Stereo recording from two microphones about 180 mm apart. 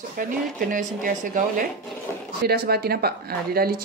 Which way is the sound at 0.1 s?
50° right (ahead or behind).